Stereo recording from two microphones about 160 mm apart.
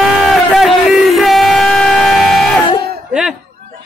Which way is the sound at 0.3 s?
Centre (ahead or behind).